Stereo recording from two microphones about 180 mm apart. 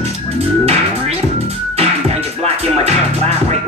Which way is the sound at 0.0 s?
35° right (ahead or behind).